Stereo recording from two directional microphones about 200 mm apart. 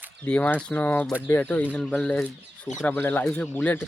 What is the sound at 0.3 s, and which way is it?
Speech, 5° left (ahead or behind).